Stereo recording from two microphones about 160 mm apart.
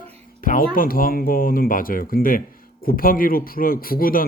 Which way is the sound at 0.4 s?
60° left (ahead or behind).